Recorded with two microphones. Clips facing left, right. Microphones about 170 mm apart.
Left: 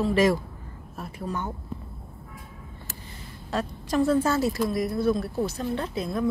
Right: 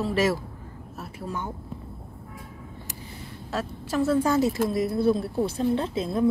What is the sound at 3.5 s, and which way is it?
Speech, 5° right (ahead or behind).